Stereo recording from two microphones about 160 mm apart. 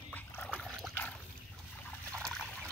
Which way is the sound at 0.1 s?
10° left (ahead or behind).